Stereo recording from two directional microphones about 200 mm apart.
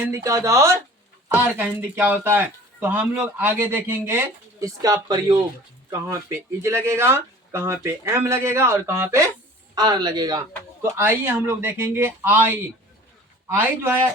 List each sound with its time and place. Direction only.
0.0 s speech: 15° right (ahead or behind)